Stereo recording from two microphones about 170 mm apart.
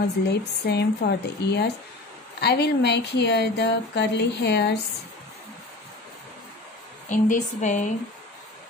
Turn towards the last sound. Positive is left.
turn(degrees=45)  # may be behind; listen again after turning